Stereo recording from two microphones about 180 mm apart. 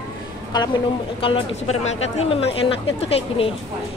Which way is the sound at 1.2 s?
35° left (ahead or behind).